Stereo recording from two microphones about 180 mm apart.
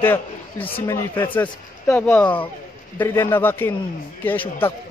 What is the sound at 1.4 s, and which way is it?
A man's voice, 10° left (ahead or behind).